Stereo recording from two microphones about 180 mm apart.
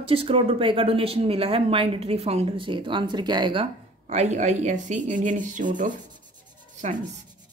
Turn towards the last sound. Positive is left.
turn(degrees=-40)  # may be behind; listen again after turning